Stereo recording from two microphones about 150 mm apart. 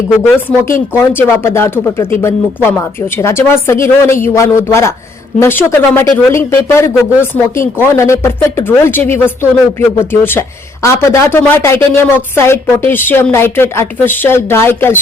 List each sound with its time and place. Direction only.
0.9 s speech: 15° left (ahead or behind)